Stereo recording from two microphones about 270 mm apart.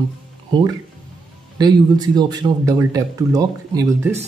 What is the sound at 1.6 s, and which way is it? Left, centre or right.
Speech, centre.